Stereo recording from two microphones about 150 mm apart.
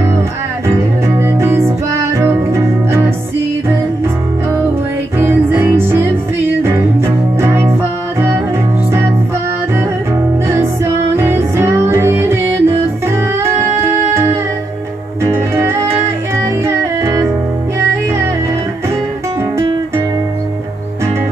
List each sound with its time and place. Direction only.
1.0 s music: 15° right (ahead or behind)
5.2 s music: 15° right (ahead or behind)
10.5 s music: 15° right (ahead or behind)
15.5 s music: 15° right (ahead or behind)